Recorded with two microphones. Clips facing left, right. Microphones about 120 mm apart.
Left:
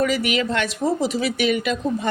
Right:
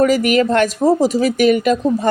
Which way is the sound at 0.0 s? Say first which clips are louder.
Right 8 dB; 45° right (ahead or behind).